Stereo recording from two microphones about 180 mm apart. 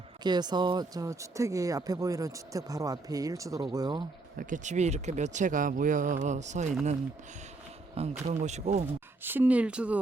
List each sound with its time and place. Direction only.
0.2 s speech: 25° right (ahead or behind)
4.4 s speech: 45° right (ahead or behind)
8.0 s speech: 35° right (ahead or behind)
9.2 s speech: 10° right (ahead or behind)